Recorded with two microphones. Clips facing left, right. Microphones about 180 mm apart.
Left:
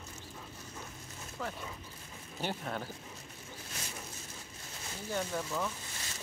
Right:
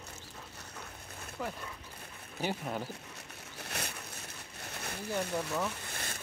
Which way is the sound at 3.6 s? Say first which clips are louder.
Right 5 dB; 65° right (ahead or behind).